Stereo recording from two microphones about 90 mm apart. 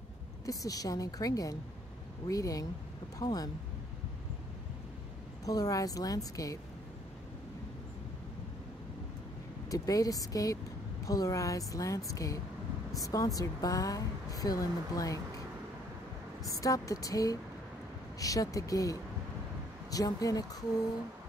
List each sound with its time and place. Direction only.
0.5 s a woman's voice: 40° left (ahead or behind)
5.4 s a woman's voice: 40° left (ahead or behind)
9.7 s a woman's voice: 40° left (ahead or behind)
16.4 s a woman's voice: 40° left (ahead or behind)